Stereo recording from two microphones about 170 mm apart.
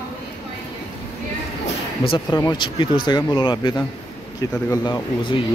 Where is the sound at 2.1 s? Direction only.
25° left (ahead or behind).